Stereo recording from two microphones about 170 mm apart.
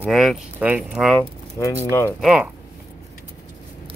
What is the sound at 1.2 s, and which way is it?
Speech, 20° left (ahead or behind).